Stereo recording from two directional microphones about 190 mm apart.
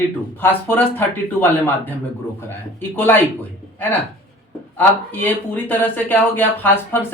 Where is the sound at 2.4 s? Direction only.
10° left (ahead or behind).